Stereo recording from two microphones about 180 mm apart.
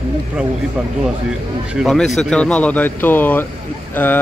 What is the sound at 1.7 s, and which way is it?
Speech, centre (ahead or behind).